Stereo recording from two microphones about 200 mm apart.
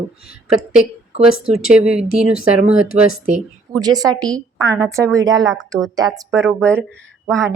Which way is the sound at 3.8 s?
20° right (ahead or behind).